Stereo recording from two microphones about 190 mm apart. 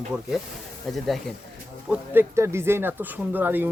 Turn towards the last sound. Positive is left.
turn(degrees=-10)  # may be behind; listen again after turning